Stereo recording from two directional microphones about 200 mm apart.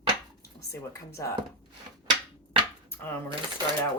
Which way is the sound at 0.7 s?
15° left (ahead or behind).